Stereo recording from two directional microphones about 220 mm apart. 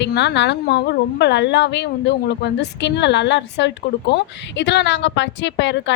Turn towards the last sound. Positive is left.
turn(degrees=55)  # may be behind; listen again after turning